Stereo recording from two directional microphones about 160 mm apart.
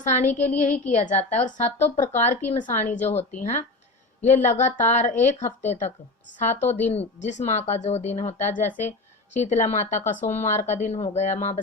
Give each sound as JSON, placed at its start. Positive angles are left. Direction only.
{"t": 0.0, "sound": "a woman's voice", "side_deg": 50}
{"t": 6.9, "sound": "a woman's voice", "side_deg": 45}